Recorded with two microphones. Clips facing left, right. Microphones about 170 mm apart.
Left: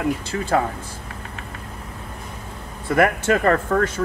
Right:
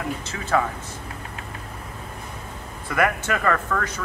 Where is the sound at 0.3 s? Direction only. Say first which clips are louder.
Even; 35° left (ahead or behind).